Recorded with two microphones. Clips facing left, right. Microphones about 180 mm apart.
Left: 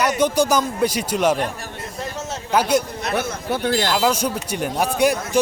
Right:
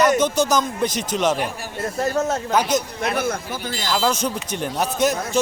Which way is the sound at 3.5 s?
65° left (ahead or behind).